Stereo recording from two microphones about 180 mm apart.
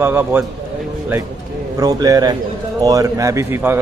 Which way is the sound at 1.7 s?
20° right (ahead or behind).